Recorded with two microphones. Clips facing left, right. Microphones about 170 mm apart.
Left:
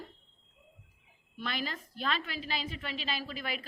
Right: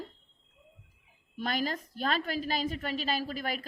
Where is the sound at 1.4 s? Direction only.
40° right (ahead or behind).